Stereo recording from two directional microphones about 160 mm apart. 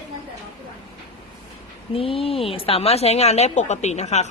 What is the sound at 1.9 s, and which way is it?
A woman's voice, 35° left (ahead or behind).